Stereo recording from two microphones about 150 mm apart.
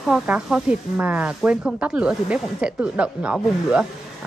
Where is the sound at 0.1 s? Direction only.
5° right (ahead or behind).